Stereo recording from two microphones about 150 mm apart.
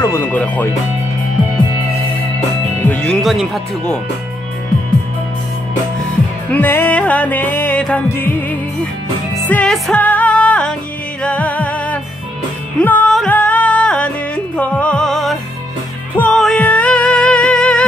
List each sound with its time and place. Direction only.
0.1 s music: 10° left (ahead or behind)
2.8 s speech: 10° left (ahead or behind)
6.5 s music: 10° left (ahead or behind)